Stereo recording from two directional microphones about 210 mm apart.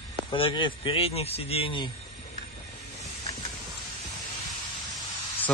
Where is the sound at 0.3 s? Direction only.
25° left (ahead or behind).